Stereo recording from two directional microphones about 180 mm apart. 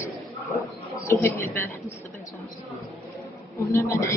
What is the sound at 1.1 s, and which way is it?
Speech, 15° left (ahead or behind).